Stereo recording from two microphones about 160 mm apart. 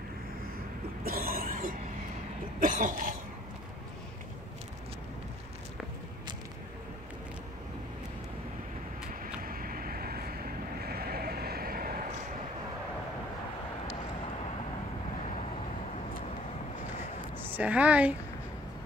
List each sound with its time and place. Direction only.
1.0 s a sound: 65° right (ahead or behind)
2.6 s cough: 55° right (ahead or behind)
9.4 s vehicle: 65° right (ahead or behind)
17.6 s a woman's voice: 10° right (ahead or behind)